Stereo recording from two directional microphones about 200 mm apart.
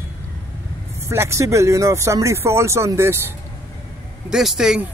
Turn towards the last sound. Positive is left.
turn(degrees=0)  # may be behind; listen again after turning